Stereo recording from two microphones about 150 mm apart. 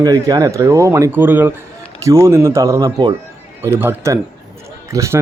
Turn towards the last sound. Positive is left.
turn(degrees=-20)  # may be behind; listen again after turning